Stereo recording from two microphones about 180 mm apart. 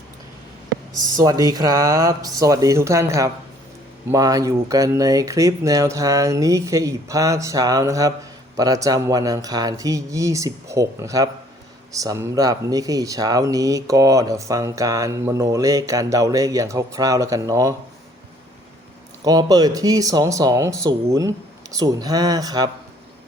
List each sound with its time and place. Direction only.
1.2 s speech: 20° right (ahead or behind)
19.2 s speech: 20° right (ahead or behind)